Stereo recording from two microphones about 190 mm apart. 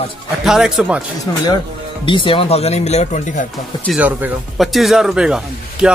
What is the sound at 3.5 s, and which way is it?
Speech, centre (ahead or behind).